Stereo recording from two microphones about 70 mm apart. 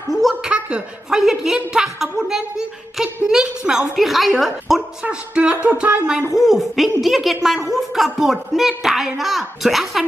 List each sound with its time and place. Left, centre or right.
0.4 s a sound: centre
1.2 s a woman's voice: centre
5.0 s speech: centre
6.3 s a woman's voice: centre